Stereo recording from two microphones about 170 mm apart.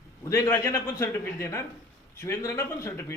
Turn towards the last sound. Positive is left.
turn(degrees=15)  # may be behind; listen again after turning